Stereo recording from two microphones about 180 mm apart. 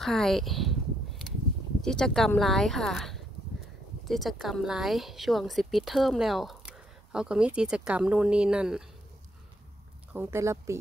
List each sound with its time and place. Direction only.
0.0 s a woman's voice: centre (ahead or behind)
1.8 s a woman's voice: 5° left (ahead or behind)
10.1 s speech: 15° right (ahead or behind)